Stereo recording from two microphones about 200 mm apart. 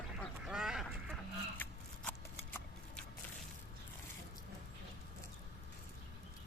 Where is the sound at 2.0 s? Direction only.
10° left (ahead or behind).